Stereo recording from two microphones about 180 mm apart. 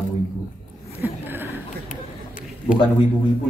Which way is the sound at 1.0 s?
10° right (ahead or behind).